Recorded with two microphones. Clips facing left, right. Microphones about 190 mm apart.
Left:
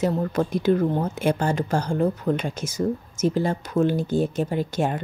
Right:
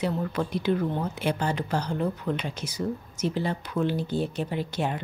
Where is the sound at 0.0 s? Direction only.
45° left (ahead or behind).